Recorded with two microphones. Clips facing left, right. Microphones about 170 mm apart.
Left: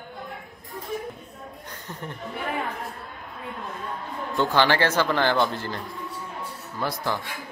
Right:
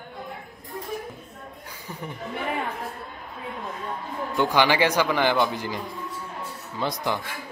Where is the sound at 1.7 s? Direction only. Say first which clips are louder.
Right 1 dB; 10° right (ahead or behind).